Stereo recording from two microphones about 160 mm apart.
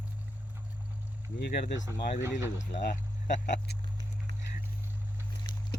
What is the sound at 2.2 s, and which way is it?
Speech, 15° right (ahead or behind).